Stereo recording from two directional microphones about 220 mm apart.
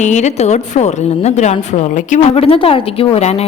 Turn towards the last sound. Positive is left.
turn(degrees=30)  # may be behind; listen again after turning